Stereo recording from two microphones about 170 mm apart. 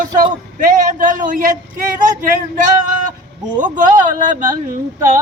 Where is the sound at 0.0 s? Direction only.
50° right (ahead or behind).